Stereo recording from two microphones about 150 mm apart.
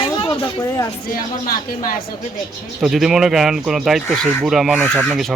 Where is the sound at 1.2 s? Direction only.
70° left (ahead or behind).